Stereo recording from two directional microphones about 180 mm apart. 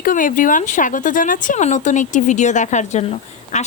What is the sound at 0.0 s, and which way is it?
Speech, 50° left (ahead or behind).